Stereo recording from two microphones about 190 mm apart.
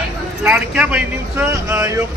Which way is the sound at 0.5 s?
10° right (ahead or behind).